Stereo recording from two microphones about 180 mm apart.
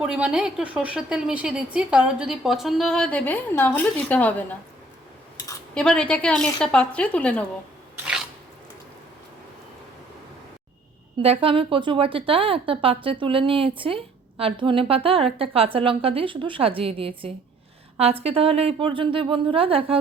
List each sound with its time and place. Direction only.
0.0 s a woman's voice: 5° right (ahead or behind)
5.7 s a woman's voice: 5° left (ahead or behind)
7.9 s a sound: 5° right (ahead or behind)
11.2 s a woman's voice: 30° right (ahead or behind)